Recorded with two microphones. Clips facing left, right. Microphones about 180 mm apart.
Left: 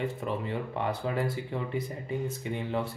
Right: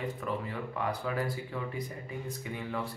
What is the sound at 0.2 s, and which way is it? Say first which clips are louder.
Speech: left 3 dB; 25° left (ahead or behind).